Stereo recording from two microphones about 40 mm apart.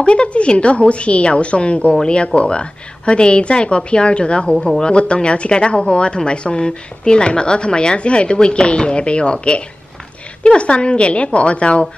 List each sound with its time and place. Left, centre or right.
0.0 s a woman's voice: left